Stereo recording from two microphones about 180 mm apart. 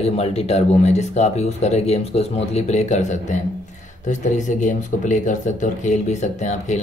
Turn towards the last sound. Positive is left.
turn(degrees=40)  # may be behind; listen again after turning